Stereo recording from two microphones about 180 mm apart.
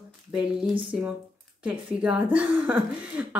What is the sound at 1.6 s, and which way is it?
A woman's voice, 5° right (ahead or behind).